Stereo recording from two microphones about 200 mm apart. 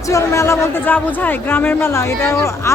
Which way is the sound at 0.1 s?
15° left (ahead or behind).